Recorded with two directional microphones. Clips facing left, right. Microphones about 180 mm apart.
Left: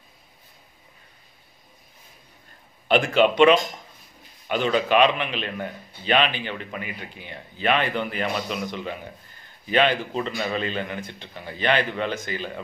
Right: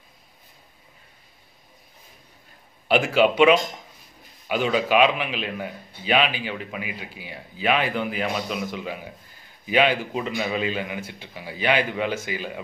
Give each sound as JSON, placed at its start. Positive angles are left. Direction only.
{"t": 2.9, "sound": "a man's voice", "side_deg": -5}